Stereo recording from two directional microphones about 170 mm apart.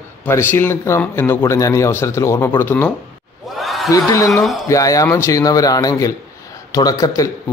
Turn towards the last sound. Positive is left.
turn(degrees=20)  # may be behind; listen again after turning